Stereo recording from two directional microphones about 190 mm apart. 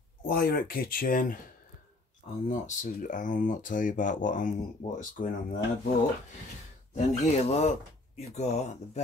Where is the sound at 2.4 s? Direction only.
40° left (ahead or behind).